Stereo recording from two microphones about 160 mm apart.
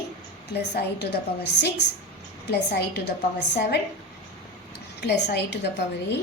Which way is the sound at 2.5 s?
90° left.